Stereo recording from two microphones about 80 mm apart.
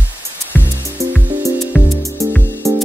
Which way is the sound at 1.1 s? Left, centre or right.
Right.